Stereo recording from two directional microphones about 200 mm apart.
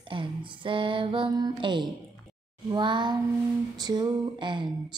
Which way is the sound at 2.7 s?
25° right (ahead or behind).